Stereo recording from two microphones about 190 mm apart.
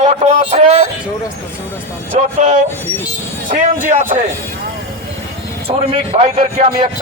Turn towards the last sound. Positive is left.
turn(degrees=-25)  # may be behind; listen again after turning